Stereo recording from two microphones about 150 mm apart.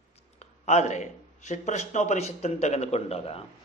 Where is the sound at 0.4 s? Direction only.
50° left (ahead or behind).